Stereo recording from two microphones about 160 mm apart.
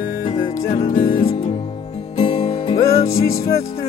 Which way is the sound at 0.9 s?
60° left (ahead or behind).